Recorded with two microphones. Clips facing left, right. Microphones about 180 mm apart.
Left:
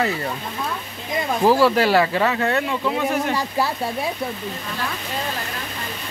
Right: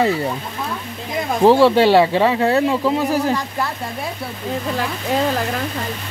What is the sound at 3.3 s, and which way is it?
Speech, 5° left (ahead or behind).